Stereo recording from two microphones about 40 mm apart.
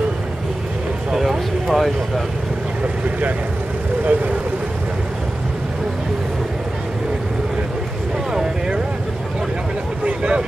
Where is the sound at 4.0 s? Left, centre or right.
Right.